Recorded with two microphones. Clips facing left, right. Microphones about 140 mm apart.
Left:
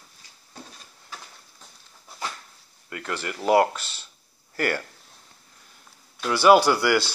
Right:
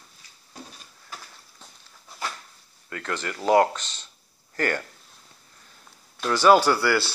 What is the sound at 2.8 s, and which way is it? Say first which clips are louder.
Speech: even; 10° left (ahead or behind).